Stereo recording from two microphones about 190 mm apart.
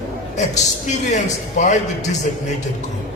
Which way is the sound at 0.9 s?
40° left (ahead or behind).